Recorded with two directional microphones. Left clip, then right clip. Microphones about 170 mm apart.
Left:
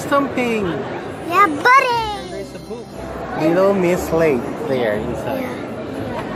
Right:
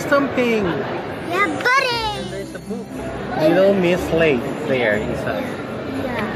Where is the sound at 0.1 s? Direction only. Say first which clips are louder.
Even; 10° left (ahead or behind).